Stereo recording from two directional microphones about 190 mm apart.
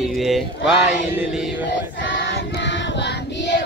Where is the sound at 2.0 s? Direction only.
70° left (ahead or behind).